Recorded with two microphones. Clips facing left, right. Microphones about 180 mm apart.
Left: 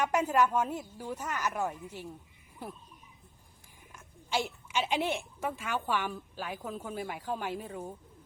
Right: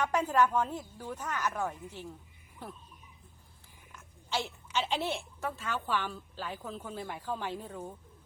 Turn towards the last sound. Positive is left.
turn(degrees=10)  # may be behind; listen again after turning